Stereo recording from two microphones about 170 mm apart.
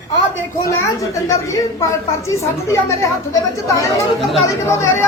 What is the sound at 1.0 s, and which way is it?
A woman's voice, 20° left (ahead or behind).